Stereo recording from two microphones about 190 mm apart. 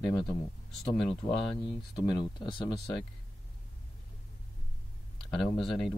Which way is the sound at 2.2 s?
25° left (ahead or behind).